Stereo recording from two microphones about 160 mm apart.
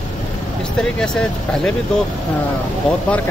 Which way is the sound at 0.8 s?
5° left (ahead or behind).